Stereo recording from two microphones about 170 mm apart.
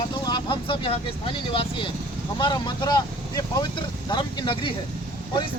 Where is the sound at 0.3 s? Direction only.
25° left (ahead or behind).